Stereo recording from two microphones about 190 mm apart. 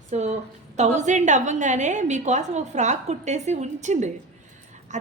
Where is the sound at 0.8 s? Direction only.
40° right (ahead or behind).